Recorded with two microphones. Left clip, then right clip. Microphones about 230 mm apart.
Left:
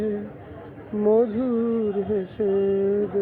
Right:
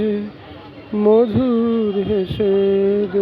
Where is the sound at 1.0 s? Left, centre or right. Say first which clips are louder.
Right 6 dB; right.